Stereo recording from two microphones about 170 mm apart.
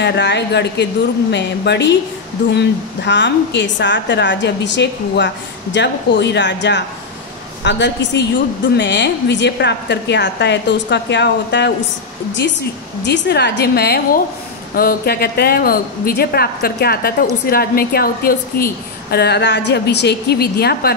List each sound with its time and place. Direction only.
0.0 s a woman's voice: 90° left
13.0 s a woman's voice: 80° left